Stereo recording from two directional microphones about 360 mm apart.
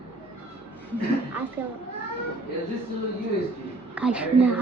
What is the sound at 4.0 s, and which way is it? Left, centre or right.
Speech, centre.